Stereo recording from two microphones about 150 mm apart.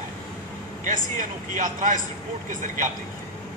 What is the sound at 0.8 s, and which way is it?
Speech, 55° right (ahead or behind).